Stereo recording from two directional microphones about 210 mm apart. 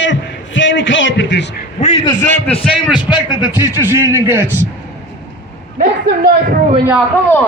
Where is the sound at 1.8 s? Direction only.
30° left (ahead or behind).